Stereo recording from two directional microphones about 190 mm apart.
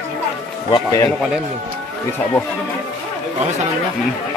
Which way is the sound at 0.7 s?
20° left (ahead or behind).